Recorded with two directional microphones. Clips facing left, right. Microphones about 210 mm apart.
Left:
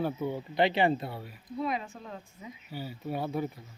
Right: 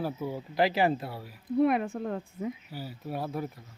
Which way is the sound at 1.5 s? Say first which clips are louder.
Right 9 dB; 60° right (ahead or behind).